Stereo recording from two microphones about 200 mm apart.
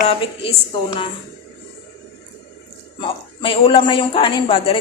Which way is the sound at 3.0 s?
25° left (ahead or behind).